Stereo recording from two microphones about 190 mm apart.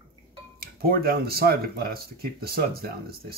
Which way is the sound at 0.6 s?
55° right (ahead or behind).